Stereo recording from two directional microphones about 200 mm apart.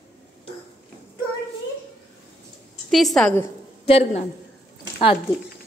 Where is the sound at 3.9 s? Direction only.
30° left (ahead or behind).